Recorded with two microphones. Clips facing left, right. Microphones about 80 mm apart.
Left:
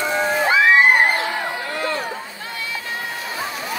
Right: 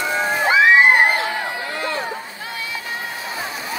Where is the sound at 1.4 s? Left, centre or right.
Centre.